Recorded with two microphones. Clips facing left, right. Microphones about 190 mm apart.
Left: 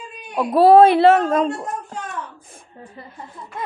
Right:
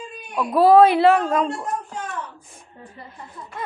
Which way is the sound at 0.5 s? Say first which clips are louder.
Left 2 dB; 25° left (ahead or behind).